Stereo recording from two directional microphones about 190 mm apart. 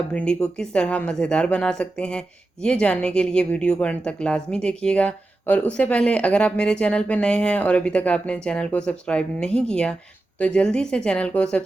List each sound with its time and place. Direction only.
0.1 s speech: 5° left (ahead or behind)